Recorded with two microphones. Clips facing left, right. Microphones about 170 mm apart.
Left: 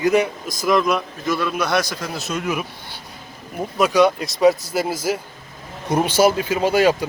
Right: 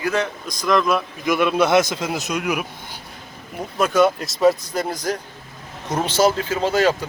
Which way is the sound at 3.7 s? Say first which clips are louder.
Left 1 dB; centre (ahead or behind).